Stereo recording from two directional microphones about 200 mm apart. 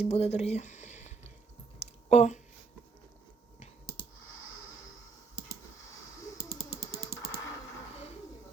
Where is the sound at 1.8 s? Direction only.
35° left (ahead or behind).